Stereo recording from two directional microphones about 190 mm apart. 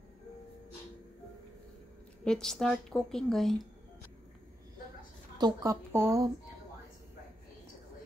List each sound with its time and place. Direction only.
2.2 s a woman's voice: centre (ahead or behind)
5.4 s speech: 15° right (ahead or behind)